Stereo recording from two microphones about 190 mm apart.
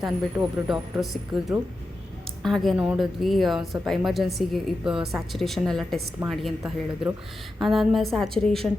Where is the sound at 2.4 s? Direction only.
Centre (ahead or behind).